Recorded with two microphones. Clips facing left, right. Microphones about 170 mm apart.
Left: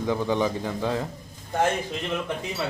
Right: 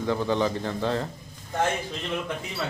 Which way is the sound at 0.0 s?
15° left (ahead or behind).